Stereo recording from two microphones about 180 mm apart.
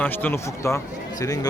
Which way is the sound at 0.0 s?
10° left (ahead or behind).